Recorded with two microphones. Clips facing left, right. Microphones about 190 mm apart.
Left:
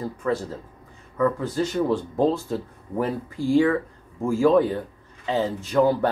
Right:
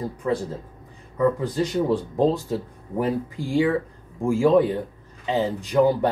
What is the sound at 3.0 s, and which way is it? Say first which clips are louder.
Speech: right 1 dB; 15° right (ahead or behind).